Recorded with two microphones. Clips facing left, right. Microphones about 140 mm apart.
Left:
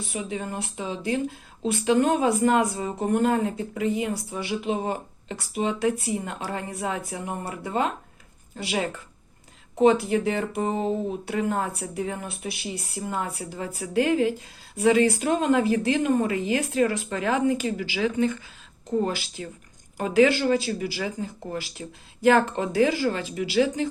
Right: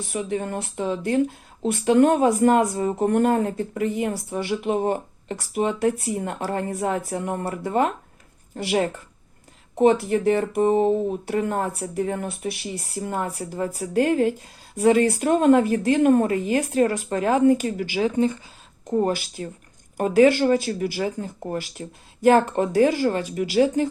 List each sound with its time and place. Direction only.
0.1 s speech: 60° right (ahead or behind)
3.2 s speech: 50° right (ahead or behind)
18.9 s speech: 50° right (ahead or behind)
21.4 s speech: 45° right (ahead or behind)